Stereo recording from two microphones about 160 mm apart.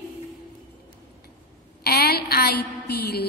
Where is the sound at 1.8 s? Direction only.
80° left.